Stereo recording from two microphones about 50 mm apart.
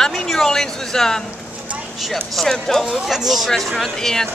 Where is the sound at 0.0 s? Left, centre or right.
Centre.